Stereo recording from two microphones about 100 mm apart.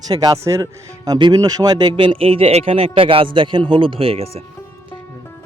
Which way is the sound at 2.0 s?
65° right (ahead or behind).